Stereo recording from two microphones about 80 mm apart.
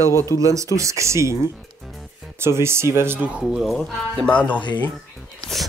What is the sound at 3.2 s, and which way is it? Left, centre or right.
Speech, centre.